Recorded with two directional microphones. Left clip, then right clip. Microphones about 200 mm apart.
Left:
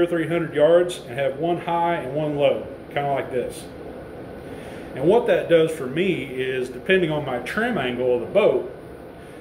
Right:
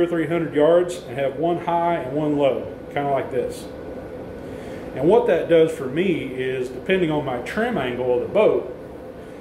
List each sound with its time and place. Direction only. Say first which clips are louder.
0.0 s a man's voice: even; 5° left (ahead or behind)
4.9 s a man's voice: right 1 dB; 5° left (ahead or behind)